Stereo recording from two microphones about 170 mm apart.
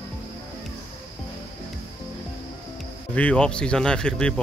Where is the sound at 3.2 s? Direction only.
5° left (ahead or behind).